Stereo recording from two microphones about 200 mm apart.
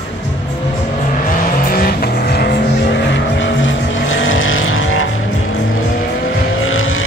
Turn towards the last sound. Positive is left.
turn(degrees=90)